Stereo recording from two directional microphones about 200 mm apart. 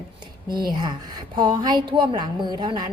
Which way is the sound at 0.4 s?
20° right (ahead or behind).